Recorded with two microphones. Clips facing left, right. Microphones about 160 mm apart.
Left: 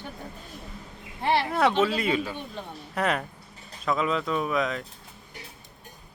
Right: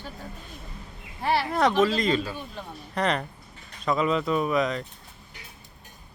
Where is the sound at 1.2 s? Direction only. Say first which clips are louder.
Left 1 dB; 25° left (ahead or behind).